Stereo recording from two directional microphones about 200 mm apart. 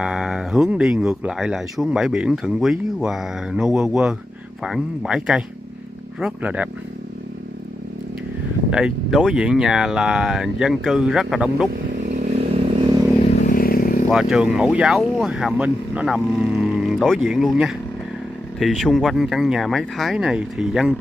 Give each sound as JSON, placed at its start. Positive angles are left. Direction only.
{"t": 0.0, "sound": "speech", "side_deg": -5}
{"t": 8.6, "sound": "speech", "side_deg": -5}
{"t": 12.0, "sound": "vehicle", "side_deg": -35}
{"t": 13.2, "sound": "vehicle", "side_deg": 35}
{"t": 14.0, "sound": "speech", "side_deg": -5}
{"t": 18.6, "sound": "speech", "side_deg": 0}